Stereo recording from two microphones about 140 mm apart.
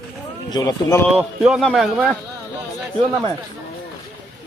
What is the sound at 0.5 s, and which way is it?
Speech, 25° left (ahead or behind).